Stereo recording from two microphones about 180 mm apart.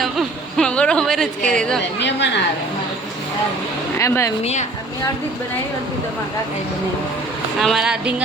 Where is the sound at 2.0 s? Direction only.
75° left (ahead or behind).